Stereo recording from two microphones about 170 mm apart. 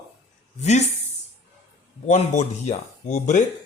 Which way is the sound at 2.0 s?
45° left (ahead or behind).